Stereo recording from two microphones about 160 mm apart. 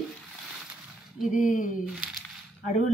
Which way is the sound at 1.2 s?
55° left (ahead or behind).